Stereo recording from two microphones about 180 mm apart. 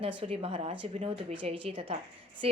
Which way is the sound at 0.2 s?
30° right (ahead or behind).